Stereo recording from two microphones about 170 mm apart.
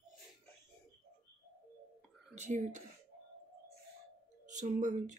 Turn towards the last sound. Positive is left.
turn(degrees=-45)  # may be behind; listen again after turning